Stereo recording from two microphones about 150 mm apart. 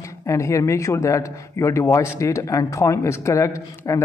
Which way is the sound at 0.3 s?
20° left (ahead or behind).